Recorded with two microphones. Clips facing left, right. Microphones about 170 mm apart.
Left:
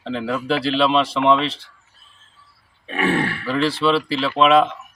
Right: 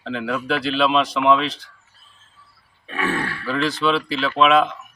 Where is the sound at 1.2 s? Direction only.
Centre (ahead or behind).